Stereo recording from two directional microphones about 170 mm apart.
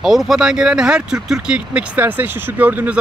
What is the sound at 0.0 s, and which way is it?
Speech, centre (ahead or behind).